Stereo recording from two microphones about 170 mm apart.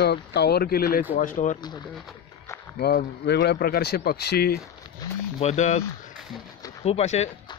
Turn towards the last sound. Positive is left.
turn(degrees=40)  # may be behind; listen again after turning